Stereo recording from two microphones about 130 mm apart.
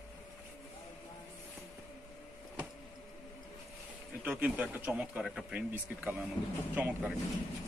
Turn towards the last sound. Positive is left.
turn(degrees=-10)  # may be behind; listen again after turning